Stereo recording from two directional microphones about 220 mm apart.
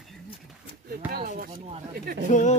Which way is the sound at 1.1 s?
45° right (ahead or behind).